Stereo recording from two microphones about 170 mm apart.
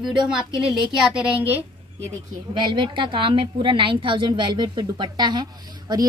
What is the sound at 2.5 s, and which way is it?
Speech, 25° right (ahead or behind).